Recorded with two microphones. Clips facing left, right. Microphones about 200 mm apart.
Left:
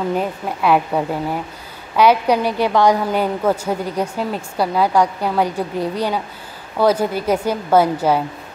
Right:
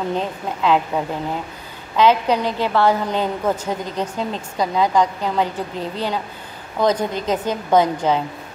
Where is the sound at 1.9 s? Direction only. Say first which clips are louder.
Left 2 dB; 10° left (ahead or behind).